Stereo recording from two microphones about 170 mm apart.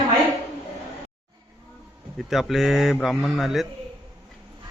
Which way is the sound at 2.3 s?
Centre (ahead or behind).